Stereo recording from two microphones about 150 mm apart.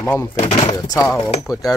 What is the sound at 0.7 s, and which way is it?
Speech, 25° left (ahead or behind).